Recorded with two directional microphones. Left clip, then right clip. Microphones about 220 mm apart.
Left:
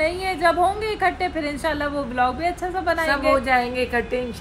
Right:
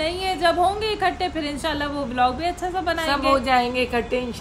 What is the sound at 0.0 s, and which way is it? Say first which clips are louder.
A woman's voice: left 1 dB; centre (ahead or behind).